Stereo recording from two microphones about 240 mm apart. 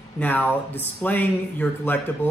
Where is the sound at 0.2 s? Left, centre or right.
Centre.